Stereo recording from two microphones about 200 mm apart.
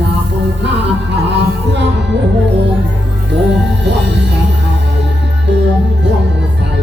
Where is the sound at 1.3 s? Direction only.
60° right (ahead or behind).